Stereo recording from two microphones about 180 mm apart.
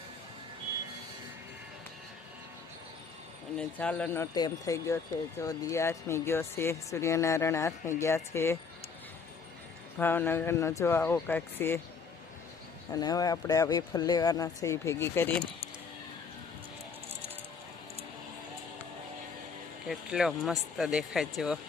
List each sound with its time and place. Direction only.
3.6 s speech: 5° left (ahead or behind)
10.0 s speech: 10° left (ahead or behind)
12.9 s speech: 20° left (ahead or behind)
19.9 s speech: 5° right (ahead or behind)